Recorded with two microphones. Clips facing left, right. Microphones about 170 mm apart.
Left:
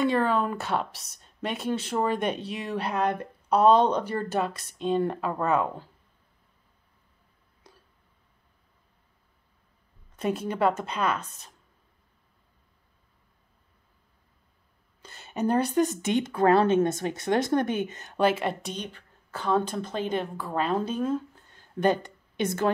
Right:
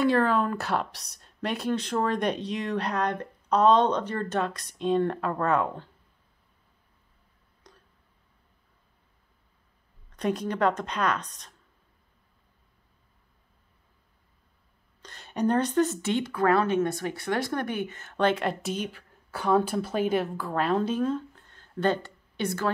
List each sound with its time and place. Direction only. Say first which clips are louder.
0.0 s speech: right 1 dB; centre (ahead or behind)
7.7 s a sound: even; 5° left (ahead or behind)
10.1 s speech: even; 5° left (ahead or behind)
15.0 s a woman's voice: right 1 dB; 5° left (ahead or behind)
18.1 s a woman's voice: left 1 dB; 5° left (ahead or behind)